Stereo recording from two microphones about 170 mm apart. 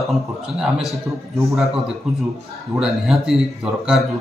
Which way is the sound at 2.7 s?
5° right (ahead or behind).